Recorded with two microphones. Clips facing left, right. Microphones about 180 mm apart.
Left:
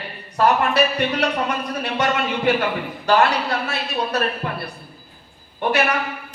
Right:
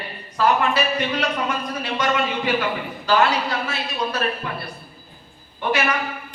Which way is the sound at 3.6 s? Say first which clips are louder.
Left 1 dB; 60° left (ahead or behind).